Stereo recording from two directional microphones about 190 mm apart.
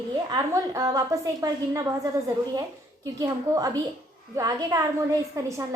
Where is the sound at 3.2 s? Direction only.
20° right (ahead or behind).